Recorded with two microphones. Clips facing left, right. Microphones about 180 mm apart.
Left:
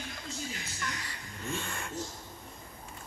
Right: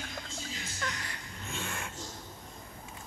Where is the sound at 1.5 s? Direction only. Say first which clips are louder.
Even; centre (ahead or behind).